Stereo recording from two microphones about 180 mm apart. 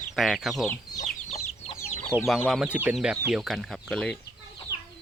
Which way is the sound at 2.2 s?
Centre (ahead or behind).